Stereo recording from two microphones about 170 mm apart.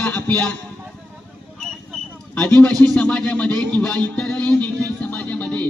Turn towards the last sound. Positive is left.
turn(degrees=5)  # may be behind; listen again after turning